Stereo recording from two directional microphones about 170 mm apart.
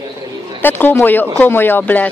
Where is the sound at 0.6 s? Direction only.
10° left (ahead or behind).